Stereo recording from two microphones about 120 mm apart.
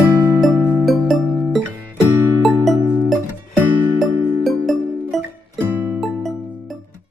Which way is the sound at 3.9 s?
Centre (ahead or behind).